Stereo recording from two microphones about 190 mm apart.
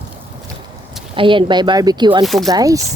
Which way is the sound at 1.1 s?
25° right (ahead or behind).